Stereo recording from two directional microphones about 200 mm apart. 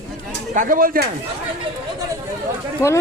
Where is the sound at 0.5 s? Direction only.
40° right (ahead or behind).